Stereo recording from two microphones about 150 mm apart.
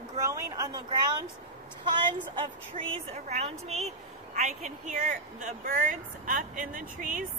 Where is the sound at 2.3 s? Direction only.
40° right (ahead or behind).